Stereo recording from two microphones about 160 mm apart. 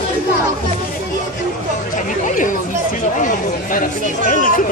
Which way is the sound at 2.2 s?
55° left (ahead or behind).